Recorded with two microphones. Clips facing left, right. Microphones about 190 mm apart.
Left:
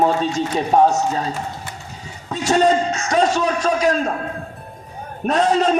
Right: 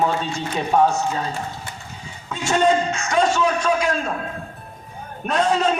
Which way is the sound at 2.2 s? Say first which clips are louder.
Left 2 dB; 40° left (ahead or behind).